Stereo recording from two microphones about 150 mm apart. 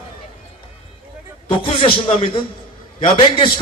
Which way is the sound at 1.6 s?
35° left (ahead or behind).